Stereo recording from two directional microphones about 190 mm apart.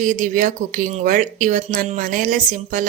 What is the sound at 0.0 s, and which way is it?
Speech, 45° right (ahead or behind).